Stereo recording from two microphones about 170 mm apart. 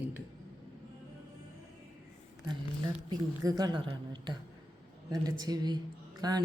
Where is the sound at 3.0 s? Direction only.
20° right (ahead or behind).